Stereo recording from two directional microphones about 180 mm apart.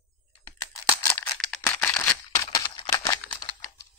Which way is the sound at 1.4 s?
5° left (ahead or behind).